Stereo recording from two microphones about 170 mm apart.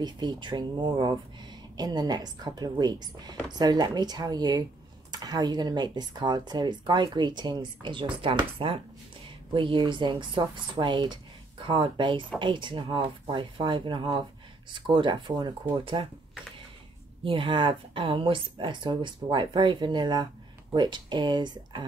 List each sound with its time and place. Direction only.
0.0 s speech: 25° right (ahead or behind)
17.2 s speech: 30° right (ahead or behind)